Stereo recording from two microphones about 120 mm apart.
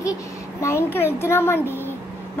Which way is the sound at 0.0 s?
25° left (ahead or behind).